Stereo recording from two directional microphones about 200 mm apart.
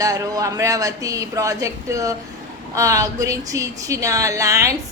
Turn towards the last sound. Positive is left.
turn(degrees=-15)  # may be behind; listen again after turning